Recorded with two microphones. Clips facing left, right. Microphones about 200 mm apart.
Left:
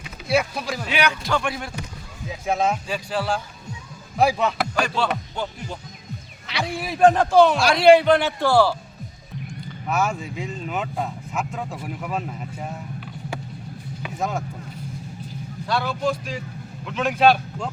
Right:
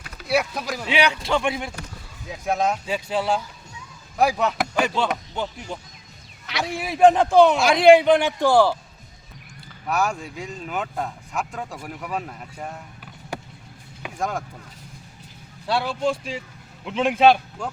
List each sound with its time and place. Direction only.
0.0 s speech: centre (ahead or behind)
0.9 s speech: 25° right (ahead or behind)
2.5 s speech: centre (ahead or behind)
2.8 s speech: 20° right (ahead or behind)
4.2 s speech: centre (ahead or behind)
4.7 s speech: 20° right (ahead or behind)
6.7 s a man's voice: 15° right (ahead or behind)
9.8 s speech: centre (ahead or behind)
14.2 s speech: 5° left (ahead or behind)
15.6 s speech: 30° right (ahead or behind)